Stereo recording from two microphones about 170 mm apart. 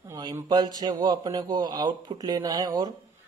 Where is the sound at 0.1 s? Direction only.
25° right (ahead or behind).